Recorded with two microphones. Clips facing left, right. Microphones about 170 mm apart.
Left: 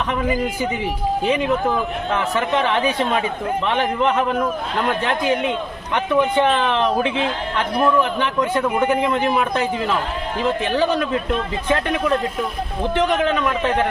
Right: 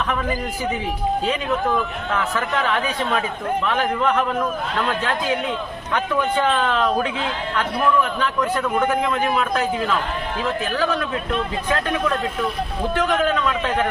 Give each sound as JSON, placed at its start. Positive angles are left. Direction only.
{"t": 0.1, "sound": "a man's voice", "side_deg": 15}
{"t": 2.0, "sound": "a man's voice", "side_deg": 25}